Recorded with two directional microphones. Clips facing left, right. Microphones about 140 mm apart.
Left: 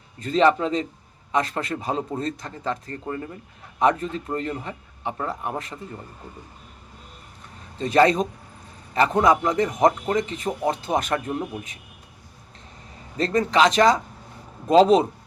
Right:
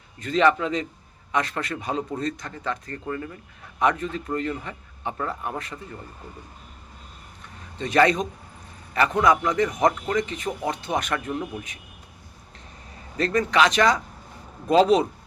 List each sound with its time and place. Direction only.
0.2 s a man's voice: 30° left (ahead or behind)
5.1 s a man's voice: 20° left (ahead or behind)
7.8 s a man's voice: 30° left (ahead or behind)
13.1 s a man's voice: 25° left (ahead or behind)